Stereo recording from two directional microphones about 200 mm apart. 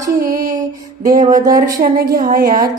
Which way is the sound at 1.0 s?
40° right (ahead or behind).